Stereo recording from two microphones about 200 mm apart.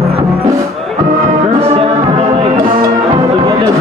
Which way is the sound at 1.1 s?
15° right (ahead or behind).